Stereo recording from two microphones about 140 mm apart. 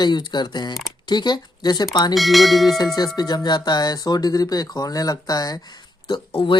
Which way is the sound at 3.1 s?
30° left (ahead or behind).